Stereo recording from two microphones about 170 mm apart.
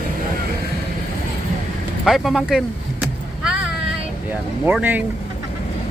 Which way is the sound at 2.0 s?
Centre (ahead or behind).